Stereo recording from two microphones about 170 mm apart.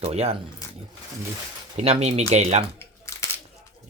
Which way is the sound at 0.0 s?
40° right (ahead or behind).